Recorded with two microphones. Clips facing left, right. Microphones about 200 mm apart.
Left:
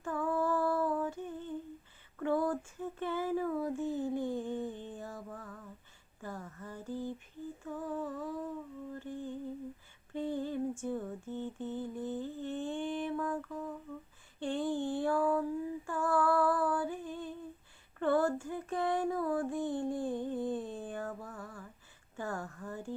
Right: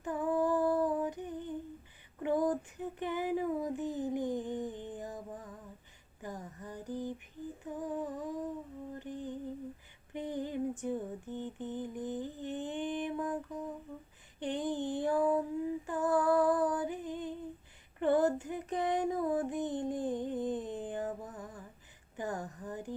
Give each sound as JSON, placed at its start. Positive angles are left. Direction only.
{"t": 0.0, "sound": "female singing", "side_deg": -20}
{"t": 2.1, "sound": "child singing", "side_deg": -15}
{"t": 6.2, "sound": "a sound", "side_deg": -15}
{"t": 7.6, "sound": "humming", "side_deg": -15}
{"t": 14.3, "sound": "female singing", "side_deg": -20}
{"t": 18.0, "sound": "child singing", "side_deg": -20}
{"t": 22.1, "sound": "a sound", "side_deg": -20}